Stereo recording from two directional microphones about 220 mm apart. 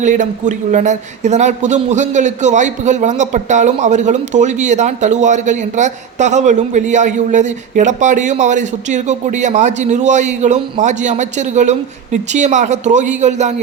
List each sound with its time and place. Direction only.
0.0 s a man's voice: 35° right (ahead or behind)